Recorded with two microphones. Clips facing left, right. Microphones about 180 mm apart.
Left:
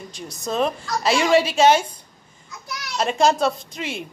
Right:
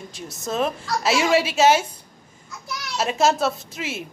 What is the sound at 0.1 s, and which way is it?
A child's voice, centre (ahead or behind).